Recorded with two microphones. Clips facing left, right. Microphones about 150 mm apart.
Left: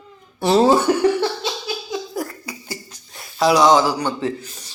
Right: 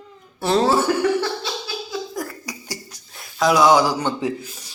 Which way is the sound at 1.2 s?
20° left (ahead or behind).